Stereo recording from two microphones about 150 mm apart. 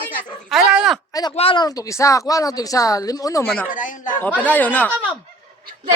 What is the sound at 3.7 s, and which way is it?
Speech, 60° left (ahead or behind).